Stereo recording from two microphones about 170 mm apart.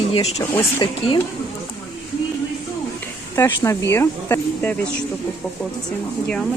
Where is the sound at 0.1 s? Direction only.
40° left (ahead or behind).